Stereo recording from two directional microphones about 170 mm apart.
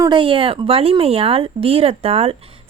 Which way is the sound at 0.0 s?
30° right (ahead or behind).